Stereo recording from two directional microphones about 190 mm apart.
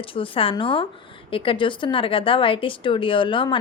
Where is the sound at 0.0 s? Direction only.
30° left (ahead or behind).